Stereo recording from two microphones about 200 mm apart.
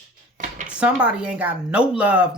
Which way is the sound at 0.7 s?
5° right (ahead or behind).